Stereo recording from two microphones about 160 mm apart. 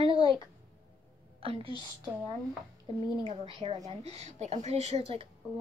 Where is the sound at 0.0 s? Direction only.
35° right (ahead or behind).